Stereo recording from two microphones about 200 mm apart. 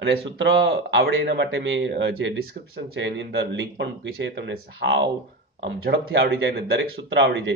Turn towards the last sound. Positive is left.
turn(degrees=-65)  # may be behind; listen again after turning